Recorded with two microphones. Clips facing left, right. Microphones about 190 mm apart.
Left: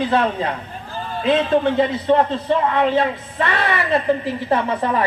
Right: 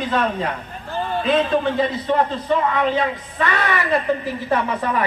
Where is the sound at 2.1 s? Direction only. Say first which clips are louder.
Left 3 dB; 25° left (ahead or behind).